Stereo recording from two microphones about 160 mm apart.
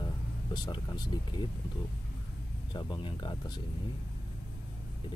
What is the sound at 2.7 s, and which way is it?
Speech, 30° left (ahead or behind).